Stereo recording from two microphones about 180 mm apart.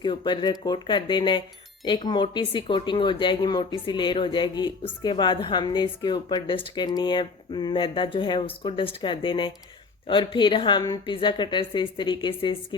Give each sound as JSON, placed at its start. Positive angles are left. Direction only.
{"t": 0.0, "sound": "a woman's voice", "side_deg": 25}